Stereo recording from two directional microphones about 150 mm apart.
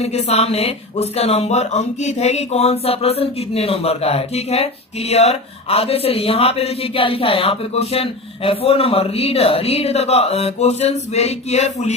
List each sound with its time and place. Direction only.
0.0 s speech: 45° left (ahead or behind)